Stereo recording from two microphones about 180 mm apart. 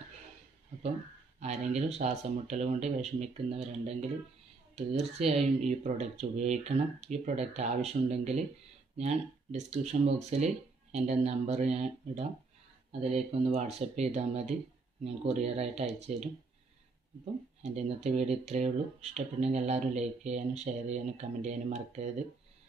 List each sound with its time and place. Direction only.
1.4 s speech: 40° right (ahead or behind)